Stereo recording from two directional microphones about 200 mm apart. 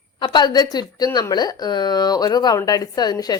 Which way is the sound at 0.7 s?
20° left (ahead or behind).